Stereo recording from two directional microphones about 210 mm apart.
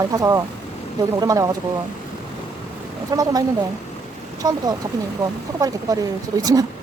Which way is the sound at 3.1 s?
15° right (ahead or behind).